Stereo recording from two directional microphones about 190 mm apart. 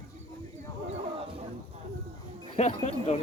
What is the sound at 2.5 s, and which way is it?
Speech, 35° left (ahead or behind).